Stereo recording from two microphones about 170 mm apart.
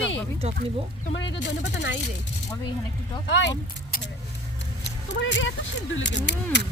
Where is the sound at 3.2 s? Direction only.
90° left.